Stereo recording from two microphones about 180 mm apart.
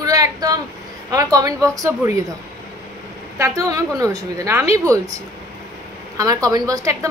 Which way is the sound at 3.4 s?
20° right (ahead or behind).